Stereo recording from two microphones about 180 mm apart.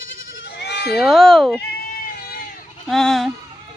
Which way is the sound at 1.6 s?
60° left (ahead or behind).